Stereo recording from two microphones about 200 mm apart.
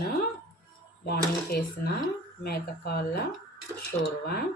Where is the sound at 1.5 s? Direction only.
55° left (ahead or behind).